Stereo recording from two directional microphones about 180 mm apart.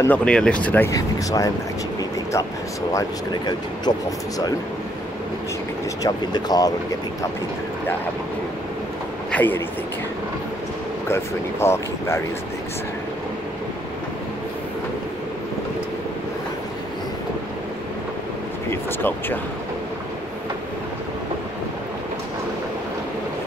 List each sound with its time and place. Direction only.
0.0 s speech: 10° left (ahead or behind)
2.9 s speech: 20° left (ahead or behind)
6.0 s speech: 20° left (ahead or behind)
9.3 s speech: 10° left (ahead or behind)
11.6 s speech: 15° left (ahead or behind)
18.7 s speech: 10° left (ahead or behind)